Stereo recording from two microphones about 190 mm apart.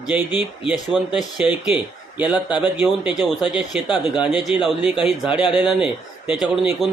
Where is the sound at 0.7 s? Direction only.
5° right (ahead or behind).